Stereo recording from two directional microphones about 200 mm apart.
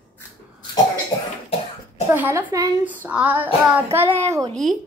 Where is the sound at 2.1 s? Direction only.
10° right (ahead or behind).